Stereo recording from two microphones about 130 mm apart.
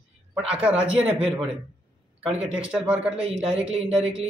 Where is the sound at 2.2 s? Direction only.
50° right (ahead or behind).